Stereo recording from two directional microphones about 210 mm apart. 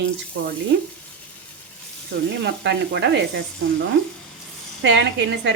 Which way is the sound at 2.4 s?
55° right (ahead or behind).